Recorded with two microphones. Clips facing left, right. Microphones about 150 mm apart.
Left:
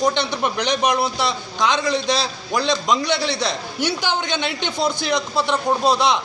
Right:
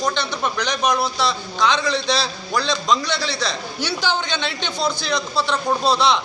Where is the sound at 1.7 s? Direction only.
45° left (ahead or behind).